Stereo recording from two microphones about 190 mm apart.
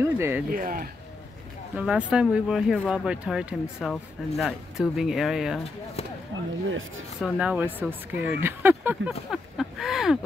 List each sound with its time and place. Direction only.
0.0 s speech: 15° right (ahead or behind)
0.5 s speech: 50° right (ahead or behind)
1.8 s speech: 5° right (ahead or behind)
6.7 s speech: 90° right
7.2 s speech: 5° right (ahead or behind)